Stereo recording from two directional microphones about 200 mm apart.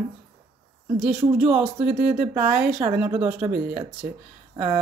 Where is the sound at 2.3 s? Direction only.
10° right (ahead or behind).